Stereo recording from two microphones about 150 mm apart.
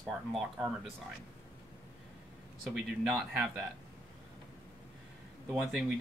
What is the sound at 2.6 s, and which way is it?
Speech, 5° right (ahead or behind).